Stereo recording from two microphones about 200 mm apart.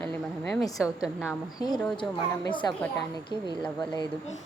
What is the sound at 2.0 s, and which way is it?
Speech, 25° left (ahead or behind).